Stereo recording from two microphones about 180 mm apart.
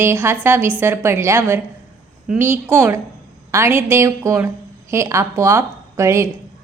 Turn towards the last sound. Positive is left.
turn(degrees=-15)  # may be behind; listen again after turning